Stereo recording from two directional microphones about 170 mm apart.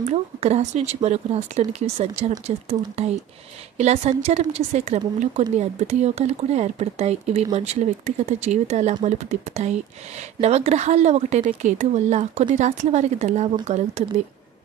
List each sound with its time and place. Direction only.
0.0 s speech: 40° right (ahead or behind)